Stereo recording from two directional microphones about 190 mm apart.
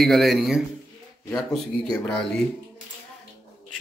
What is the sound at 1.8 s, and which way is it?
Speech, 5° left (ahead or behind).